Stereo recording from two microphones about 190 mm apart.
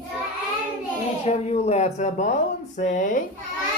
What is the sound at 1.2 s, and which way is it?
Speech, 35° left (ahead or behind).